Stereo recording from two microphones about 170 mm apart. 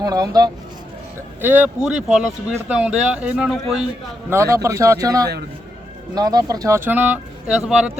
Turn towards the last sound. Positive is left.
turn(degrees=-5)  # may be behind; listen again after turning